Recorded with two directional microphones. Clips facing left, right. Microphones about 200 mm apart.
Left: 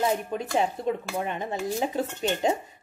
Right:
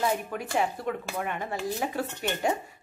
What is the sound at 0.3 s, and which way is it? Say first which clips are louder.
Speech: left 2 dB; 20° left (ahead or behind).